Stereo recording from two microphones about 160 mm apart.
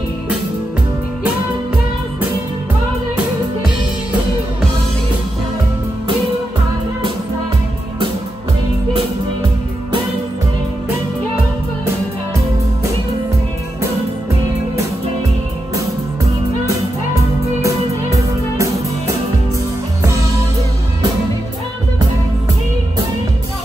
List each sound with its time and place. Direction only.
17.6 s music: 20° right (ahead or behind)